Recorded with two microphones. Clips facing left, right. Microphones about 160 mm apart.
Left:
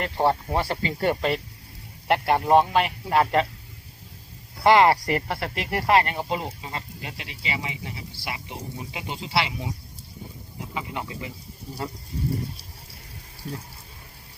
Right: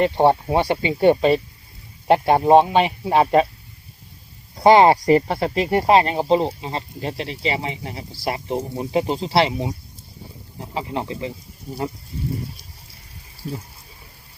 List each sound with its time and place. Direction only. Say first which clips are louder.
0.0 s speech: right 7 dB; 20° right (ahead or behind)
4.6 s speech: right 5 dB; 20° right (ahead or behind)
10.8 s speech: right 7 dB; 30° right (ahead or behind)